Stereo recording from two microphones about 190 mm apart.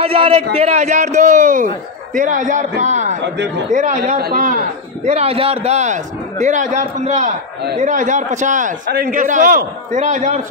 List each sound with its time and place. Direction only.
0.0 s a man's voice: 30° right (ahead or behind)
2.8 s a sound: 35° right (ahead or behind)
3.7 s a man's voice: 40° right (ahead or behind)